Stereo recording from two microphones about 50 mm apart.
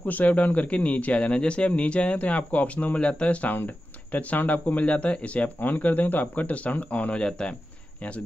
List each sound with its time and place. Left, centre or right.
0.0 s speech: left
3.5 s speech: left
5.6 s speech: left; by 7.5 s centre